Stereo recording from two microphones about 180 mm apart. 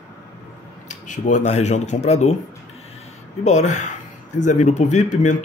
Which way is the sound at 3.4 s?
40° left (ahead or behind).